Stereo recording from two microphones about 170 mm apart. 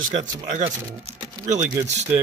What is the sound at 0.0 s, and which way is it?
Speech, 50° right (ahead or behind).